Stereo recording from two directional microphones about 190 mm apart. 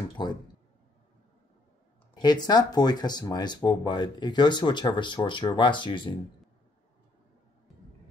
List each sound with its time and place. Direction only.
0.2 s speech: 25° left (ahead or behind)
2.1 s speech: 20° left (ahead or behind)